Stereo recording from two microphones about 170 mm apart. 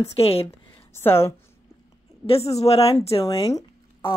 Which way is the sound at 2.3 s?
35° left (ahead or behind).